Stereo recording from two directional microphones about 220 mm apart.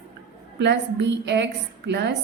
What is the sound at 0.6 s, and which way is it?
A woman's voice, 50° right (ahead or behind).